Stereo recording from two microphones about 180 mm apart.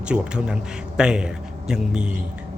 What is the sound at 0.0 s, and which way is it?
Speech, 5° right (ahead or behind).